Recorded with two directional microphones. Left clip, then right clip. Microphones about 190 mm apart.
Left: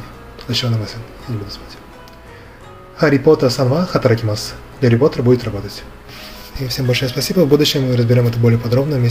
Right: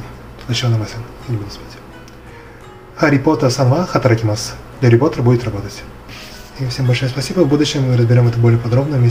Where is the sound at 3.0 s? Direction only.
30° left (ahead or behind).